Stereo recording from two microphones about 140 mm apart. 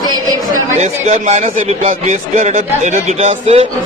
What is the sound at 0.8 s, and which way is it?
A man's voice, 50° right (ahead or behind).